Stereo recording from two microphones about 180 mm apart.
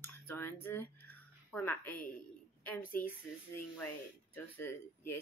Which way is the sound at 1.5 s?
10° left (ahead or behind).